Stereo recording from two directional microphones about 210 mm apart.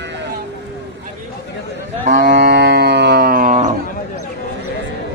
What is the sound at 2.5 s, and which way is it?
Music, 50° right (ahead or behind).